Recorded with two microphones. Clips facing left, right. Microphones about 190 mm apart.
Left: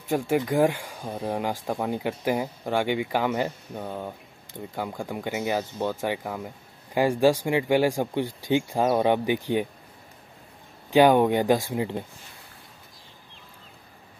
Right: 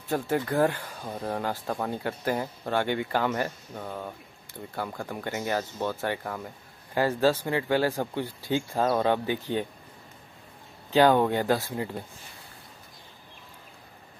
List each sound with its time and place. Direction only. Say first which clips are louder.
0.1 s speech: left 3 dB; 15° left (ahead or behind)
10.9 s speech: left 3 dB; 15° left (ahead or behind)